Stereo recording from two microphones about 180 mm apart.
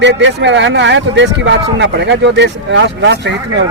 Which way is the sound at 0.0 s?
85° right.